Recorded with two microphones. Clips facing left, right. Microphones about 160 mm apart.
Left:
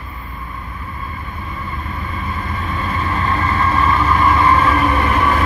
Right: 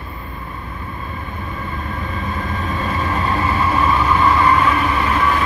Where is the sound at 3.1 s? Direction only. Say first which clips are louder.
Left 1 dB; 15° right (ahead or behind).